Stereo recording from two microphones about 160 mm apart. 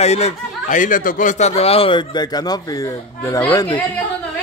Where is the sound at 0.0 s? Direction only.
45° left (ahead or behind); by 3.4 s 20° left (ahead or behind).